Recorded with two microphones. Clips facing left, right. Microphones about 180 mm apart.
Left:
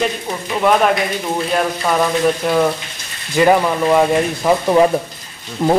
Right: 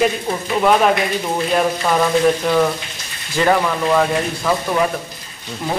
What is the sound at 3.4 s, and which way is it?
Speech, 15° left (ahead or behind).